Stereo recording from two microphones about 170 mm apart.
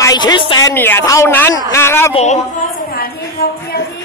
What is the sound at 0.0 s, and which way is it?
Speech, 25° left (ahead or behind).